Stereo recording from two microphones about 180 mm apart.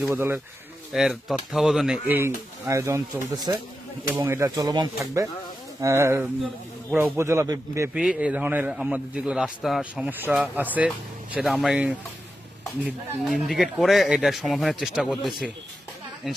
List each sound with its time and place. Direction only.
0.1 s a man's voice: 10° right (ahead or behind)
7.9 s a man's voice: 5° right (ahead or behind)